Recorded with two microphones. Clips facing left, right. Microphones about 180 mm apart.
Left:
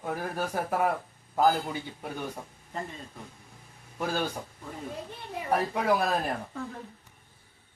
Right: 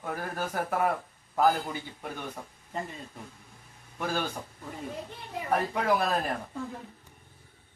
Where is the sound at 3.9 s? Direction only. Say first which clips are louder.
Left 1 dB; 10° left (ahead or behind).